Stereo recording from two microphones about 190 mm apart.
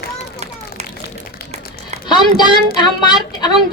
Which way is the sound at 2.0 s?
25° left (ahead or behind).